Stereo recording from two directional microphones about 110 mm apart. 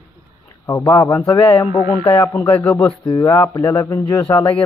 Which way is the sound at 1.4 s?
55° left (ahead or behind).